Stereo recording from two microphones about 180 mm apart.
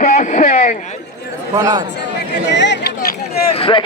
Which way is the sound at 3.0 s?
50° left (ahead or behind).